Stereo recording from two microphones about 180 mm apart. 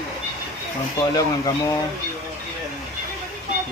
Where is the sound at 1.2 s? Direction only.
20° left (ahead or behind).